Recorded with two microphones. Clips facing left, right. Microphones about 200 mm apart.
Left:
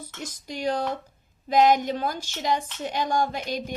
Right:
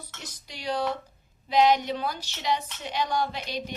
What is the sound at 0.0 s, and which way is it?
A woman's voice, 45° left (ahead or behind).